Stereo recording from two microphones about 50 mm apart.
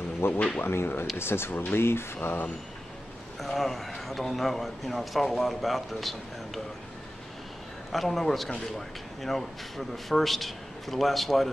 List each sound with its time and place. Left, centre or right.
0.2 s speech: left
3.3 s speech: centre
7.9 s speech: centre